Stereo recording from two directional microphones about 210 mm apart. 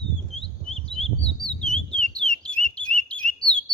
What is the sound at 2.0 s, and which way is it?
Bird, 5° left (ahead or behind).